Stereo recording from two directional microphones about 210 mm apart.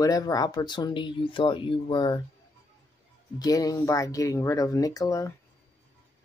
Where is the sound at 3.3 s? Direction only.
15° left (ahead or behind).